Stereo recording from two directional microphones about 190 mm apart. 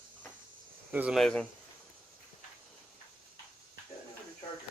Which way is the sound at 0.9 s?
5° right (ahead or behind).